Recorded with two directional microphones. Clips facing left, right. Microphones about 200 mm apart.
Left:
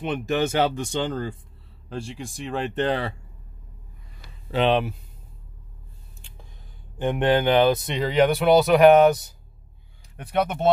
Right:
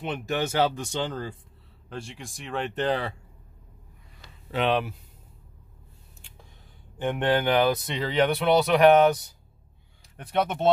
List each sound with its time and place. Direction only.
0.0 s speech: 20° left (ahead or behind)
4.5 s speech: 30° left (ahead or behind)
7.0 s speech: 15° left (ahead or behind)